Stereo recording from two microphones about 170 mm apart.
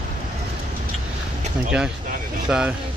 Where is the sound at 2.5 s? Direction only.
5° right (ahead or behind).